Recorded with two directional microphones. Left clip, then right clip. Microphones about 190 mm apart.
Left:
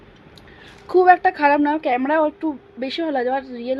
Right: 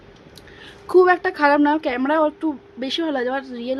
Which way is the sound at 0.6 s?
15° right (ahead or behind).